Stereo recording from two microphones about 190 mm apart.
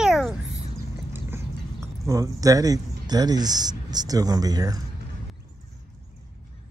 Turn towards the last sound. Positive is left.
turn(degrees=-20)  # may be behind; listen again after turning